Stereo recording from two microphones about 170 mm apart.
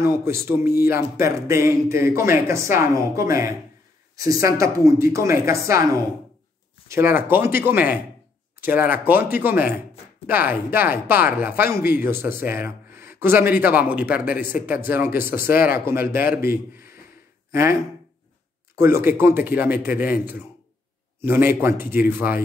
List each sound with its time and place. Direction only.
0.0 s speech: 15° right (ahead or behind)
16.4 s speech: 65° left (ahead or behind)
17.5 s speech: 15° right (ahead or behind)
18.8 s speech: 15° right (ahead or behind)